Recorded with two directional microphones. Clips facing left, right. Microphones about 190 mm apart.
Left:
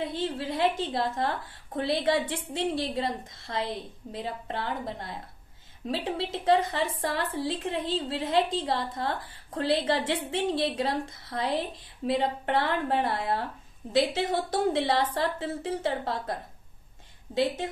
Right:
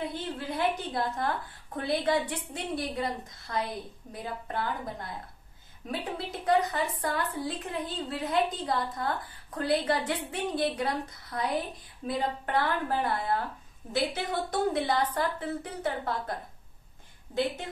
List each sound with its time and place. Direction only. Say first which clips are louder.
0.0 s a woman's voice: left 4 dB; 25° left (ahead or behind)
17.3 s a woman's voice: left 3 dB; 25° left (ahead or behind)